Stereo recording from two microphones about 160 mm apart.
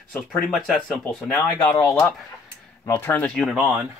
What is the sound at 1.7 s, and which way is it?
Speech, 15° left (ahead or behind).